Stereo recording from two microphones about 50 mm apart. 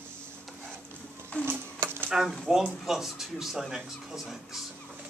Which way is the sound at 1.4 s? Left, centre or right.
Right.